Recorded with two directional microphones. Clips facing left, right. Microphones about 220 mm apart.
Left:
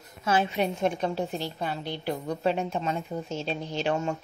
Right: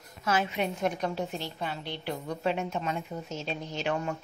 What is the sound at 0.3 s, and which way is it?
A woman's voice, 30° left (ahead or behind).